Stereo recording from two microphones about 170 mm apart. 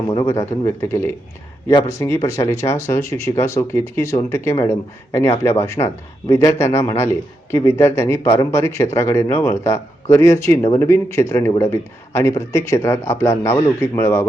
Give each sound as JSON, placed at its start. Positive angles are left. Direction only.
{"t": 0.1, "sound": "speech", "side_deg": 20}